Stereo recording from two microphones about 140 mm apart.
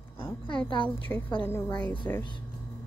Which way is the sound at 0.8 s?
10° left (ahead or behind).